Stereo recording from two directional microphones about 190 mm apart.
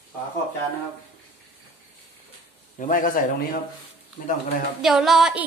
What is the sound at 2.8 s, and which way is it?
Speech, 45° left (ahead or behind).